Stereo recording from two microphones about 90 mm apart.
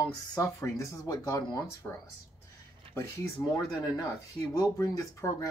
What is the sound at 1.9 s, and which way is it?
Speech, 20° left (ahead or behind).